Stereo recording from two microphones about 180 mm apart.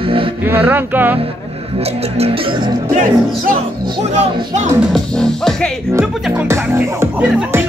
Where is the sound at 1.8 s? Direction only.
35° right (ahead or behind).